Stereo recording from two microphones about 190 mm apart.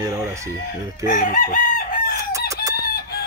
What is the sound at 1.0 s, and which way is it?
Chicken, 45° left (ahead or behind).